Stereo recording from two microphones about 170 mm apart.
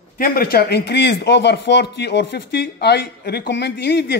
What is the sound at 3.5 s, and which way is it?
Speech, 90° left.